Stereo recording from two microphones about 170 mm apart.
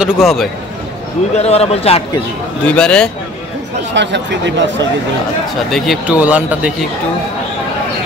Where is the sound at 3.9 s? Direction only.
90° right.